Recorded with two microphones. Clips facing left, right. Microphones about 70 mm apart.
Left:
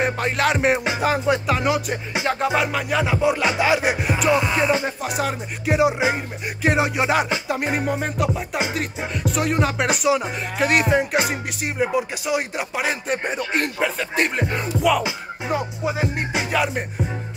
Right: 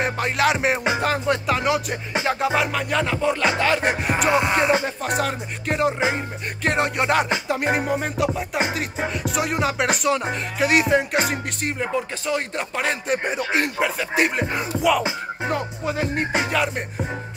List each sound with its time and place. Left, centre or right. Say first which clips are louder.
0.0 s speech: even; centre
4.3 s music: even; right
4.8 s speech: even; centre